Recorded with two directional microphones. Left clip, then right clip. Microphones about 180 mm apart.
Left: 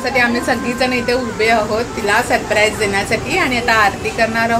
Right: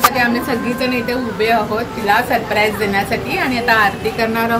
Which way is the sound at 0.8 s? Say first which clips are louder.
Left 2 dB; 30° left (ahead or behind).